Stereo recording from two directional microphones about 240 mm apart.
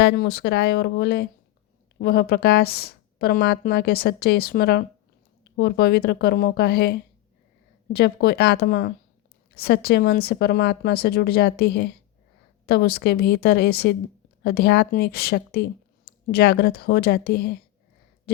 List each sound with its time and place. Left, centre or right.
0.0 s a woman's voice: left
7.9 s a woman's voice: left